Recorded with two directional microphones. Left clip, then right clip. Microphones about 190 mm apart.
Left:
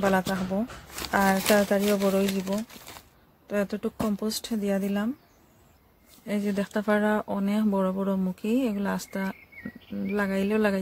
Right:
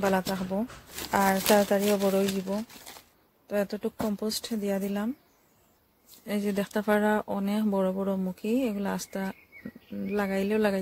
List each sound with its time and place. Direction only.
0.0 s speech: 20° right (ahead or behind)
6.2 s speech: 20° right (ahead or behind)